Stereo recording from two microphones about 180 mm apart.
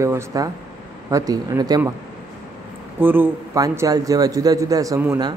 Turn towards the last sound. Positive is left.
turn(degrees=-15)  # may be behind; listen again after turning